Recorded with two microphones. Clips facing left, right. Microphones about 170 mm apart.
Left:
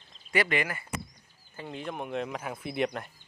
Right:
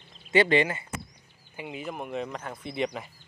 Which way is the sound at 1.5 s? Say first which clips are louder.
Right 1 dB; 5° right (ahead or behind).